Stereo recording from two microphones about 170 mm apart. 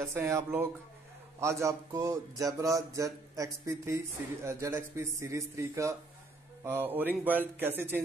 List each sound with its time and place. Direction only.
0.0 s a man's voice: 15° right (ahead or behind)